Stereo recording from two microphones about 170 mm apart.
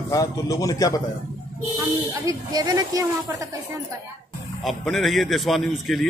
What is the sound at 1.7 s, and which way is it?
Speech, 20° right (ahead or behind).